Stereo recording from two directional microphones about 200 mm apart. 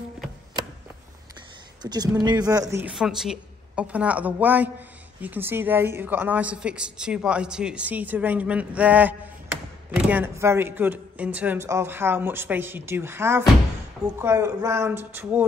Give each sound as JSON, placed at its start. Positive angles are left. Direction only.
{"t": 1.8, "sound": "a woman's voice", "side_deg": -20}
{"t": 2.9, "sound": "a woman's voice", "side_deg": 0}